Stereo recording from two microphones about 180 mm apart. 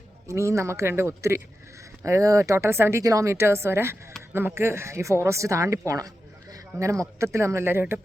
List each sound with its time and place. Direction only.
0.3 s speech: 15° right (ahead or behind)